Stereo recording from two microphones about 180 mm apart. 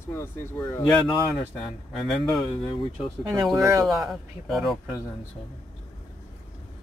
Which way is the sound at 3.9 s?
Centre (ahead or behind).